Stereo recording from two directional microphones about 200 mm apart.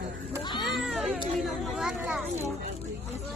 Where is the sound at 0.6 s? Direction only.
Centre (ahead or behind).